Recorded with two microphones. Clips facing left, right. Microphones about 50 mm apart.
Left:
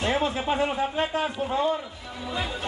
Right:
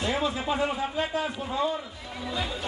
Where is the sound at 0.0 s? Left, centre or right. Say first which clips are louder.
Left 2 dB; left.